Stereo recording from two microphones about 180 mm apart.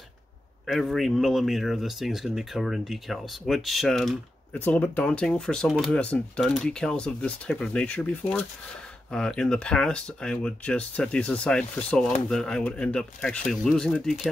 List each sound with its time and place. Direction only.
0.7 s speech: centre (ahead or behind)